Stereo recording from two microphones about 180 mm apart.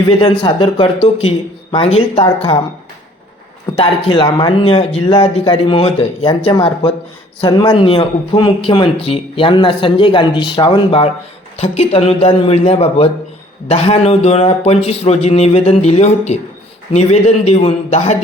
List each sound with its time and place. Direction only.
0.2 s speech: 25° left (ahead or behind)
2.0 s speech: 30° left (ahead or behind)
3.8 s speech: 25° left (ahead or behind)